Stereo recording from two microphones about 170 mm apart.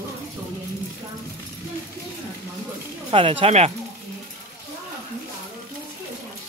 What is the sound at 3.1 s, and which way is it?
Speech, 30° right (ahead or behind).